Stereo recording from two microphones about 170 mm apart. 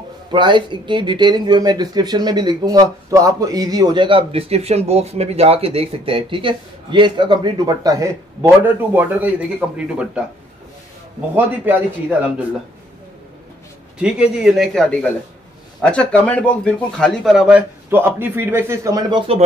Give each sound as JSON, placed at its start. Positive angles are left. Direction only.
{"t": 0.3, "sound": "a man's voice", "side_deg": -30}
{"t": 11.3, "sound": "speech", "side_deg": -10}
{"t": 13.9, "sound": "a man's voice", "side_deg": -5}